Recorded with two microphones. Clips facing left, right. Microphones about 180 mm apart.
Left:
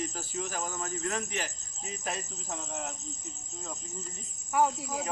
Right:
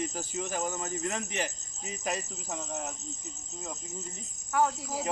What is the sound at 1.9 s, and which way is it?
Speech, 10° right (ahead or behind).